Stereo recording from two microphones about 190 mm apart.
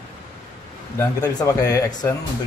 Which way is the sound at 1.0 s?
20° left (ahead or behind).